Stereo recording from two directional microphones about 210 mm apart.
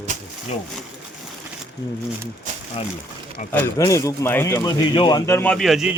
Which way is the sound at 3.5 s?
10° left (ahead or behind).